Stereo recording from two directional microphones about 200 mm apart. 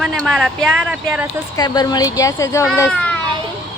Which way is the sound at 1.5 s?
20° left (ahead or behind).